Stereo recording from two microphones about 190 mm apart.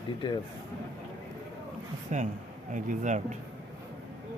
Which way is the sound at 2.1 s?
40° right (ahead or behind).